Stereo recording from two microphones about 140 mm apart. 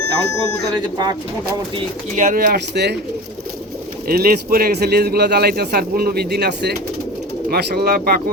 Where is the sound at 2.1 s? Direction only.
80° right.